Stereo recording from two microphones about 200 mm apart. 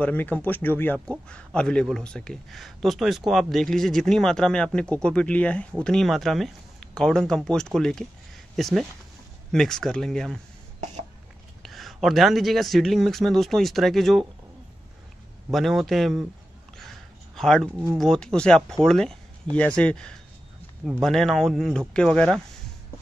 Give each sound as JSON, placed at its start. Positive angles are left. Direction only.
{"t": 0.0, "sound": "speech", "side_deg": 10}
{"t": 11.6, "sound": "speech", "side_deg": 0}
{"t": 15.5, "sound": "speech", "side_deg": 0}
{"t": 17.4, "sound": "speech", "side_deg": 0}